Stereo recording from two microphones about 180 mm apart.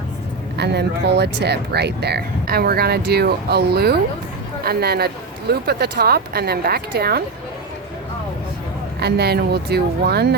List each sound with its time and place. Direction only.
0.5 s speech: 65° right (ahead or behind)
9.0 s speech: 65° right (ahead or behind)